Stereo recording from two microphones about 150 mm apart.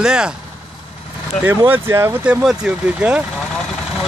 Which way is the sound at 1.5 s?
15° right (ahead or behind).